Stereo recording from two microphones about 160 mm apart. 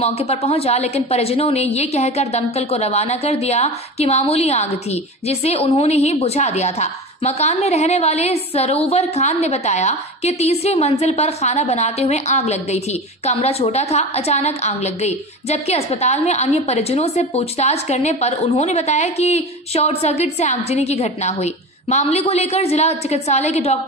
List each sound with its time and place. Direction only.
0.0 s a woman's voice: 40° left (ahead or behind)